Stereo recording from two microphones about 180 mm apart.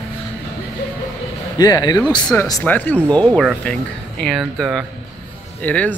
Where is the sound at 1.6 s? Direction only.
20° left (ahead or behind).